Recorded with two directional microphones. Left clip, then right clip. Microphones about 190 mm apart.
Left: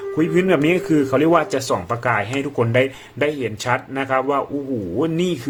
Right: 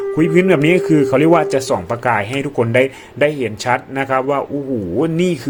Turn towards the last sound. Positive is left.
turn(degrees=-15)  # may be behind; listen again after turning